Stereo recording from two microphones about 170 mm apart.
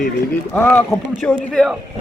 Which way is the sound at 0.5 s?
10° left (ahead or behind).